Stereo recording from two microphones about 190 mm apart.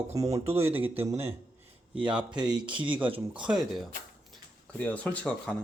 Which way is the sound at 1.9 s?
5° right (ahead or behind).